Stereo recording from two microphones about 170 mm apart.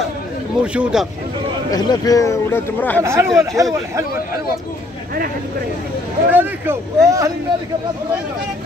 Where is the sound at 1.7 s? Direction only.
20° left (ahead or behind).